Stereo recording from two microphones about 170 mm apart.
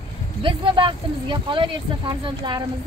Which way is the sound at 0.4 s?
30° right (ahead or behind).